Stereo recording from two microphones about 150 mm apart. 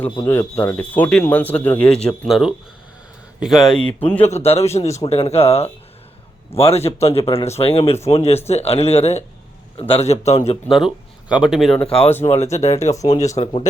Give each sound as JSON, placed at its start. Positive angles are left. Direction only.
{"t": 0.3, "sound": "speech", "side_deg": 15}
{"t": 4.0, "sound": "speech", "side_deg": 10}
{"t": 4.3, "sound": "a man's voice", "side_deg": 45}
{"t": 10.7, "sound": "speech", "side_deg": 0}
{"t": 12.5, "sound": "a man's voice", "side_deg": 50}
{"t": 12.9, "sound": "speech", "side_deg": 20}
{"t": 13.1, "sound": "a man's voice", "side_deg": 50}